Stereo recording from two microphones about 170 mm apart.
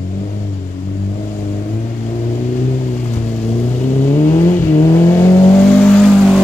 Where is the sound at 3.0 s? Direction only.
40° left (ahead or behind).